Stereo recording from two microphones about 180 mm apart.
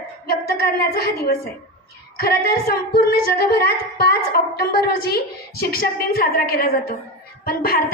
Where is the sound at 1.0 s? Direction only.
60° left (ahead or behind).